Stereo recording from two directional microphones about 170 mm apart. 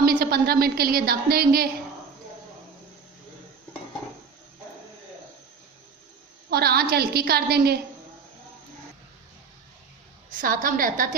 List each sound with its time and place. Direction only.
0.0 s a woman's voice: 60° right (ahead or behind)
6.5 s a woman's voice: 65° right (ahead or behind)
10.2 s a woman's voice: 55° right (ahead or behind)